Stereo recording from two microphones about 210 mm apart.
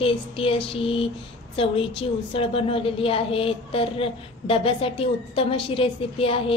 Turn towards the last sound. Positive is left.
turn(degrees=25)  # may be behind; listen again after turning